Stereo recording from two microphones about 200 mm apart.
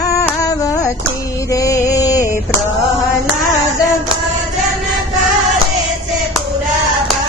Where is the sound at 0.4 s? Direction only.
15° left (ahead or behind).